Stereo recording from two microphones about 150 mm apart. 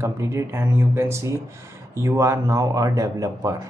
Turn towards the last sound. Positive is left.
turn(degrees=-20)  # may be behind; listen again after turning